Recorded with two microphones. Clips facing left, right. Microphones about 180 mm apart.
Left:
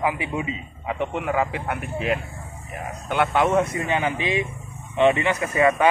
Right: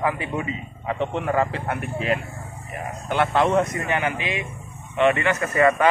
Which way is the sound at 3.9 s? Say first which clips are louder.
Left 1 dB; 20° left (ahead or behind).